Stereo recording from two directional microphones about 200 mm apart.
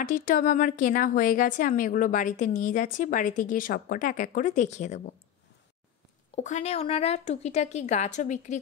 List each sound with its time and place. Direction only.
0.0 s a woman's voice: 45° left (ahead or behind)
6.3 s a woman's voice: 35° left (ahead or behind)